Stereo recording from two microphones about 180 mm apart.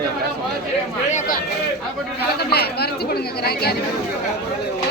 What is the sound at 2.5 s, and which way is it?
Speech, 60° left (ahead or behind).